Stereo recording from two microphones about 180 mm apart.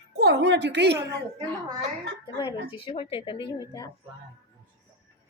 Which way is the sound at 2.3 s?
25° left (ahead or behind).